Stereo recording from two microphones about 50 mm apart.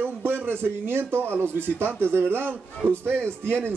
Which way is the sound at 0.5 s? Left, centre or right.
Right.